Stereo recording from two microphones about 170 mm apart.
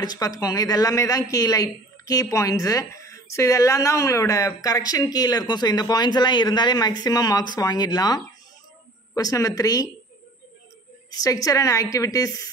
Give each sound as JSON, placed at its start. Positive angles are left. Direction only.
{"t": 0.0, "sound": "speech", "side_deg": 20}
{"t": 11.1, "sound": "speech", "side_deg": 20}